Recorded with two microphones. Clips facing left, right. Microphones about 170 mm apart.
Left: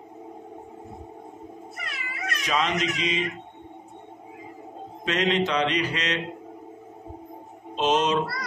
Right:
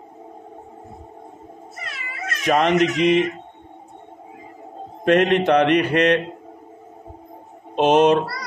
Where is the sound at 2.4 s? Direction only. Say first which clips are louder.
Right 9 dB; 55° right (ahead or behind).